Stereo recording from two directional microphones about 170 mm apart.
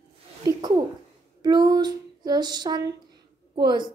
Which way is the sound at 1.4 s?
25° right (ahead or behind).